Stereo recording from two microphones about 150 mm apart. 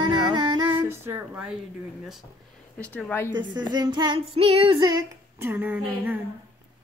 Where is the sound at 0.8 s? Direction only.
15° right (ahead or behind).